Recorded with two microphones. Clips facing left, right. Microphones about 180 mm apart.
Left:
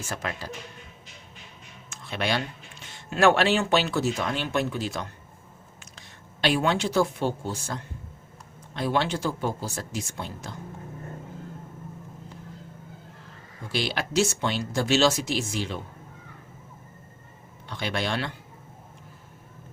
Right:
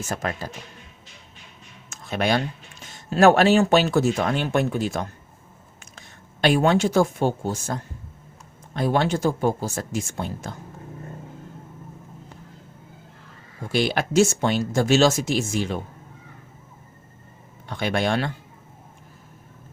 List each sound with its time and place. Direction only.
0.0 s speech: 45° right (ahead or behind)
1.9 s a sound: 45° right (ahead or behind)
2.8 s speech: 40° right (ahead or behind)
13.7 s speech: 50° right (ahead or behind)
17.7 s speech: 50° right (ahead or behind)